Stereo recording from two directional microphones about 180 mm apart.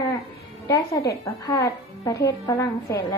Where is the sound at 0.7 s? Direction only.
15° left (ahead or behind).